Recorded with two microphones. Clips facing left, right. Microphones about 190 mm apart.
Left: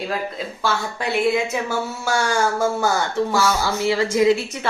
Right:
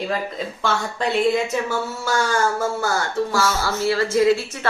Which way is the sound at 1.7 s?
10° left (ahead or behind).